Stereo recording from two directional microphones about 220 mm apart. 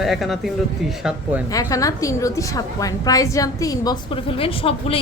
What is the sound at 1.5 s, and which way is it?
A woman's voice, 15° left (ahead or behind).